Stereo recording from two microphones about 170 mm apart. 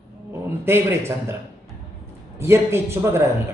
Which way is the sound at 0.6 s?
15° right (ahead or behind).